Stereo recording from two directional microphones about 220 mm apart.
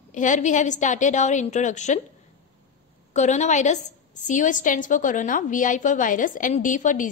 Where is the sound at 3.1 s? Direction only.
30° left (ahead or behind).